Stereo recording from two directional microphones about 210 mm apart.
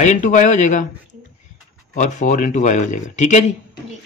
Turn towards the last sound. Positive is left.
turn(degrees=35)  # may be behind; listen again after turning